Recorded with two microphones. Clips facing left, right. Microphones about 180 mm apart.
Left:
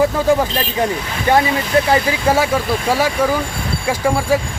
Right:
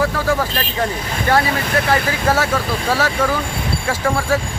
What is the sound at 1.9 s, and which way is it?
Speech, 15° left (ahead or behind).